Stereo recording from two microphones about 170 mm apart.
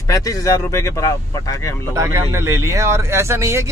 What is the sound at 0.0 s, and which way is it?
Speech, 20° left (ahead or behind).